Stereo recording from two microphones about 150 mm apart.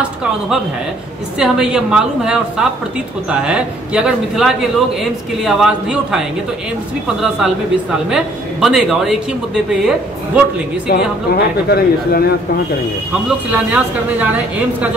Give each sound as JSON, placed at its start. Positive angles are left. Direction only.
{"t": 1.4, "sound": "a woman's voice", "side_deg": -5}
{"t": 10.9, "sound": "speech", "side_deg": 90}
{"t": 13.1, "sound": "a man's voice", "side_deg": -10}